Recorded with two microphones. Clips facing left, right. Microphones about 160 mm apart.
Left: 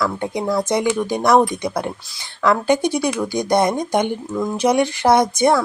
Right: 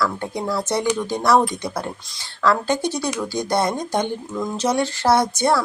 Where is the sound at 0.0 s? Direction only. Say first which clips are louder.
Left 2 dB; 15° left (ahead or behind).